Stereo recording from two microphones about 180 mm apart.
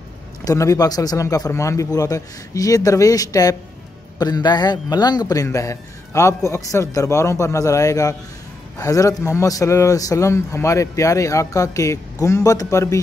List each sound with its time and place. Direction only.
0.5 s a man's voice: 20° left (ahead or behind)